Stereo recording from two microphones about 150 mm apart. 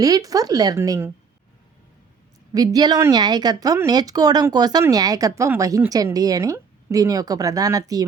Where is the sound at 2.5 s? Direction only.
25° right (ahead or behind).